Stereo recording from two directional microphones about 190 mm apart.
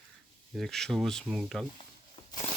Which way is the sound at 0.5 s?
Centre (ahead or behind).